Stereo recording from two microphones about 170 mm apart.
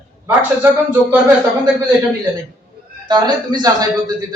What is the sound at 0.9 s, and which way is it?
Speech, 10° right (ahead or behind).